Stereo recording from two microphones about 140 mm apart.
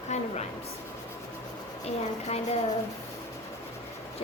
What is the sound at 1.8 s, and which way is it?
Speech, 50° left (ahead or behind).